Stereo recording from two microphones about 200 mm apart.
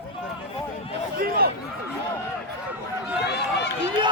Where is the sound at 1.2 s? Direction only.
50° right (ahead or behind).